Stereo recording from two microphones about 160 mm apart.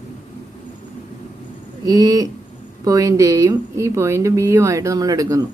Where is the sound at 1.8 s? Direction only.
25° right (ahead or behind).